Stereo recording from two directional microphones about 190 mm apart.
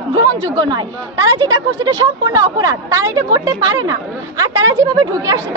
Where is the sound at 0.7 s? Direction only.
20° right (ahead or behind).